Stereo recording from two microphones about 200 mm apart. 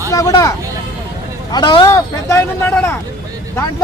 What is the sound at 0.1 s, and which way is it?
Speech, 15° left (ahead or behind).